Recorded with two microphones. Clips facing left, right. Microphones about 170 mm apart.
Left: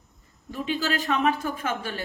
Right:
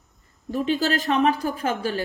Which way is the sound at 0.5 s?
40° right (ahead or behind).